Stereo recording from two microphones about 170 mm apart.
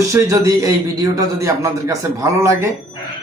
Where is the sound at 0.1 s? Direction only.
20° right (ahead or behind).